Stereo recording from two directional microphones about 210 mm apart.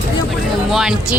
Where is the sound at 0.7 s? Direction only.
Centre (ahead or behind).